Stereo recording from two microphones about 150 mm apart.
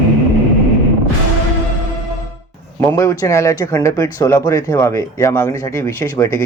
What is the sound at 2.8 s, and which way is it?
Speech, 20° left (ahead or behind).